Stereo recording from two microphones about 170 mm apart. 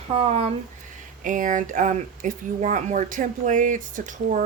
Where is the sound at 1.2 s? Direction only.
50° right (ahead or behind).